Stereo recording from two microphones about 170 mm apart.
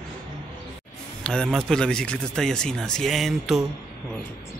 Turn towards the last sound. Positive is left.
turn(degrees=0)  # may be behind; listen again after turning